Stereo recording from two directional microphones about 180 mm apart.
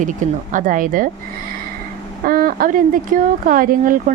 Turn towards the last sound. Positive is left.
turn(degrees=-50)  # may be behind; listen again after turning